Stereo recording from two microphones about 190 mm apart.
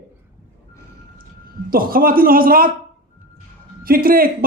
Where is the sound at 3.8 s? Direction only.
50° right (ahead or behind).